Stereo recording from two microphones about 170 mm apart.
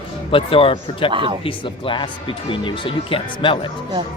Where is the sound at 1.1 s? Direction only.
30° right (ahead or behind).